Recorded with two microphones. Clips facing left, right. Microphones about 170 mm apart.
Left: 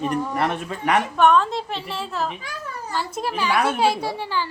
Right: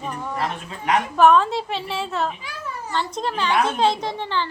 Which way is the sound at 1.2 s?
Centre (ahead or behind).